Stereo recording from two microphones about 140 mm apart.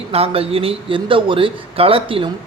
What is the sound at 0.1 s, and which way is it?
Speech, 45° right (ahead or behind).